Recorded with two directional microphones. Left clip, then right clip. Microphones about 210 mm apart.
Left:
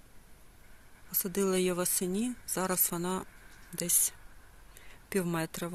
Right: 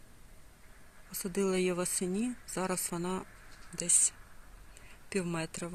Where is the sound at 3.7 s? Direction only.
15° left (ahead or behind).